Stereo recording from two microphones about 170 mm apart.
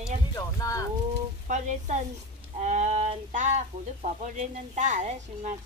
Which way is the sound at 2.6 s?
45° right (ahead or behind).